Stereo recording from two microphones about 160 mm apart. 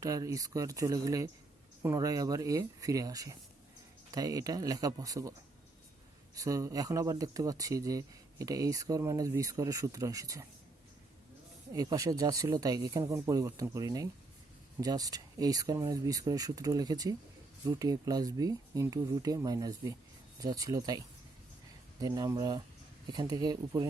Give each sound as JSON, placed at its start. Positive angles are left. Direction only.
{"t": 0.0, "sound": "speech", "side_deg": -20}
{"t": 6.3, "sound": "speech", "side_deg": -20}
{"t": 11.7, "sound": "speech", "side_deg": -20}
{"t": 22.0, "sound": "speech", "side_deg": -25}